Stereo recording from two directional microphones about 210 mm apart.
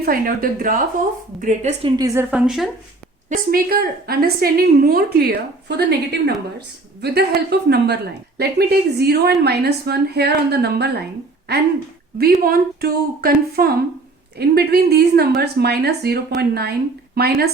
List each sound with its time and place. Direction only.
0.0 s a woman's voice: 45° right (ahead or behind)
2.0 s a woman's voice: 15° right (ahead or behind)
2.3 s speech: 5° right (ahead or behind)
3.2 s a woman's voice: 45° right (ahead or behind)
12.4 s a woman's voice: 45° right (ahead or behind)